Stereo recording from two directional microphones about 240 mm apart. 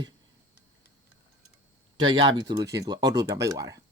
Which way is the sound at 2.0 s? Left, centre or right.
Centre.